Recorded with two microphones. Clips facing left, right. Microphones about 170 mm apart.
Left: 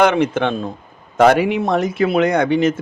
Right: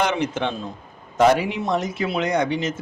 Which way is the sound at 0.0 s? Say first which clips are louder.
Left 7 dB; 55° left (ahead or behind).